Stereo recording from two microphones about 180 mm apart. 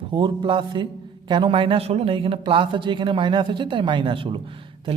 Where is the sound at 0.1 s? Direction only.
25° right (ahead or behind).